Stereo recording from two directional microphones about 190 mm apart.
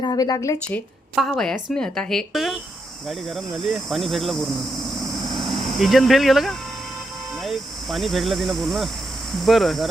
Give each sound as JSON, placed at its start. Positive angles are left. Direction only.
{"t": 0.0, "sound": "a woman's voice", "side_deg": 20}
{"t": 1.1, "sound": "cricket", "side_deg": 0}
{"t": 5.4, "sound": "speech", "side_deg": 0}
{"t": 9.4, "sound": "cricket", "side_deg": 0}